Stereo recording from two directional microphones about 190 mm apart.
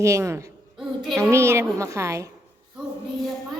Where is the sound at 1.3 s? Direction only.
15° right (ahead or behind).